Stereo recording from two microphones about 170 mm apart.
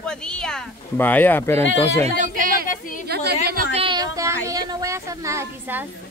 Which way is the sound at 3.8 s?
25° right (ahead or behind).